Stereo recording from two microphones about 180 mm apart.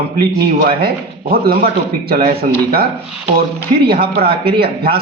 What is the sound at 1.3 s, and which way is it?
Speech, 60° right (ahead or behind).